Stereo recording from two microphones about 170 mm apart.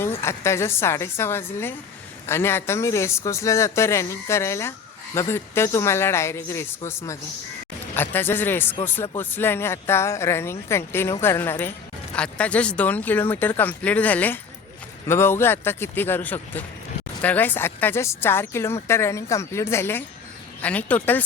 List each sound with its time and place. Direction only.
0.0 s speech: 15° left (ahead or behind)